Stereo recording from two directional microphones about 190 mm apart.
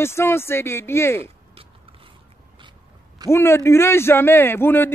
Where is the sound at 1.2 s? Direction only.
30° right (ahead or behind).